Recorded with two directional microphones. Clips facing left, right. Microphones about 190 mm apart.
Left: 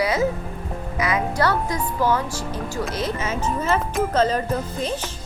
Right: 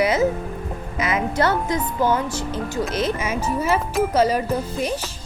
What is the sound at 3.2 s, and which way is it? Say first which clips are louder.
A child's voice: right 1 dB; 10° right (ahead or behind).